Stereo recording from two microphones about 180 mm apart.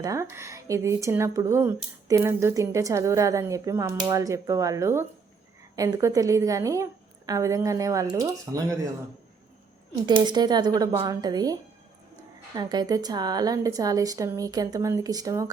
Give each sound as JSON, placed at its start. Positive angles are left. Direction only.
{"t": 0.0, "sound": "speech", "side_deg": -15}
{"t": 10.1, "sound": "speech", "side_deg": -25}
{"t": 12.5, "sound": "speech", "side_deg": -25}